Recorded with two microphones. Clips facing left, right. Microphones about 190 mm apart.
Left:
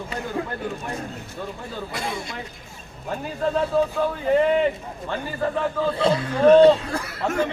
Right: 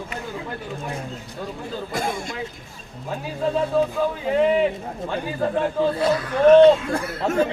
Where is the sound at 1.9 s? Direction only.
45° right (ahead or behind).